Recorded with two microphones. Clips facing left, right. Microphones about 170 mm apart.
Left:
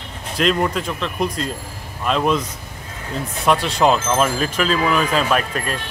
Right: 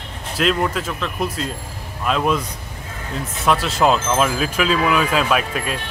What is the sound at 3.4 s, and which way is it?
Speech, centre (ahead or behind).